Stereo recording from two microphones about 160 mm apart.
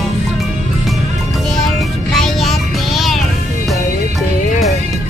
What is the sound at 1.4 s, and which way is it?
Music, centre (ahead or behind).